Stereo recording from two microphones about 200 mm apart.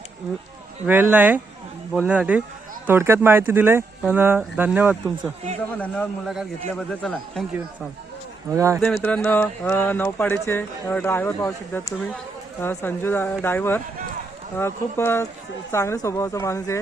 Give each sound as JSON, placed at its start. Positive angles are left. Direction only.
{"t": 0.9, "sound": "speech", "side_deg": -10}
{"t": 5.6, "sound": "a man's voice", "side_deg": 5}
{"t": 8.4, "sound": "speech", "side_deg": -15}
{"t": 8.8, "sound": "speech", "side_deg": 5}